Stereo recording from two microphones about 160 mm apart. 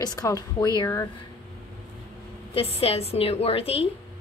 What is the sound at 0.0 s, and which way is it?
A woman's voice, 25° left (ahead or behind).